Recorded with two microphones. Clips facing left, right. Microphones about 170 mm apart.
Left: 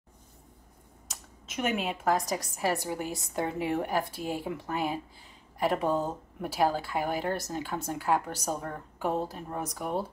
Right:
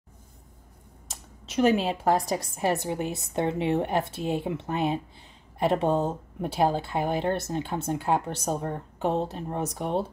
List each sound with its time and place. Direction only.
1.0 s speech: 30° right (ahead or behind)